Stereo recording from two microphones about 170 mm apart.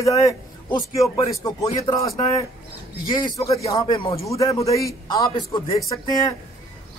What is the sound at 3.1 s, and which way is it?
A man's voice, 30° left (ahead or behind).